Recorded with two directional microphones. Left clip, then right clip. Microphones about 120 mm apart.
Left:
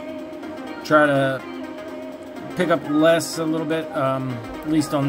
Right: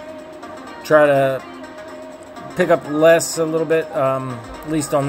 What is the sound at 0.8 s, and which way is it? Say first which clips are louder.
Speech: right 4 dB; 5° right (ahead or behind).